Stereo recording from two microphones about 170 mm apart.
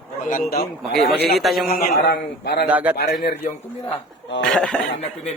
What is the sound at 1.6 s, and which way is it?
A man's voice, 60° left (ahead or behind).